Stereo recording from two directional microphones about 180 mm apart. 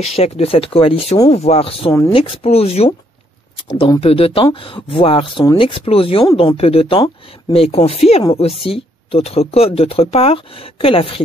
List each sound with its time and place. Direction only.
0.0 s speech: 35° left (ahead or behind)
1.9 s speech: 15° left (ahead or behind)
2.1 s speech: 35° left (ahead or behind)